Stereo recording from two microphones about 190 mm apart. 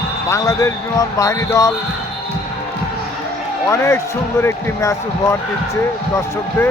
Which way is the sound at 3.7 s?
15° left (ahead or behind).